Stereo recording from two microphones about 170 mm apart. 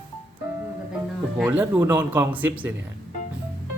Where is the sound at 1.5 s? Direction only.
10° right (ahead or behind).